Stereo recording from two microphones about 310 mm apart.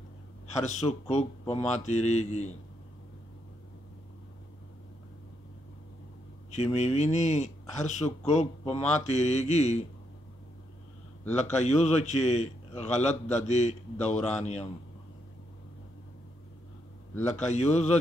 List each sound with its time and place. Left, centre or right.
0.6 s a man's voice: left
6.5 s a man's voice: left
11.3 s a man's voice: left
17.5 s a man's voice: left